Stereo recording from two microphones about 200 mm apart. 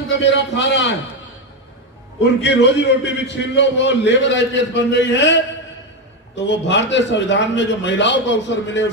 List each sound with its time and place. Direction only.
0.1 s a man's voice: 60° left (ahead or behind)
2.4 s a man's voice: 60° left (ahead or behind)